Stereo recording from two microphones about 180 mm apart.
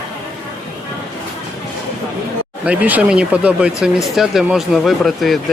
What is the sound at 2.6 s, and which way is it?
Speech, 10° right (ahead or behind).